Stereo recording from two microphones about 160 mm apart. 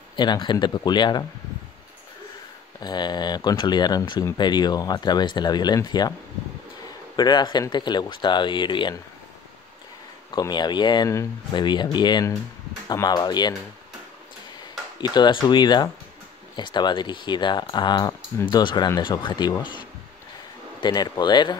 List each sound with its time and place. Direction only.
0.1 s speech: 30° left (ahead or behind)
2.8 s speech: 25° left (ahead or behind)
7.2 s speech: 25° left (ahead or behind)
10.3 s speech: 25° left (ahead or behind)
15.0 s speech: 25° left (ahead or behind)